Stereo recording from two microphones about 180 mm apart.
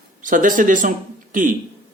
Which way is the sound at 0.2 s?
45° right (ahead or behind).